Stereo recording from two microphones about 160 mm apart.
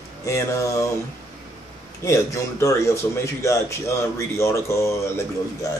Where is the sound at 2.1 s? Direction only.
20° left (ahead or behind).